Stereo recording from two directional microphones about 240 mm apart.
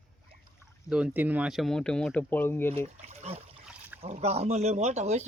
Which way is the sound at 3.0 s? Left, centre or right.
Right.